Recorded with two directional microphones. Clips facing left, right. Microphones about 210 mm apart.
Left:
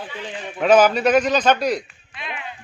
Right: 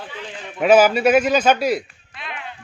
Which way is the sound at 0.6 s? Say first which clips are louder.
Right 1 dB; 5° right (ahead or behind).